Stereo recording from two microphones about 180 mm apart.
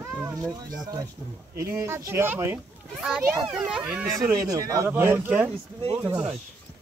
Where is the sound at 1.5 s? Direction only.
15° right (ahead or behind).